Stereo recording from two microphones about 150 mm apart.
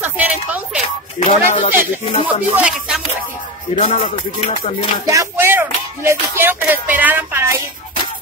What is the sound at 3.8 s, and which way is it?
Music, 50° left (ahead or behind).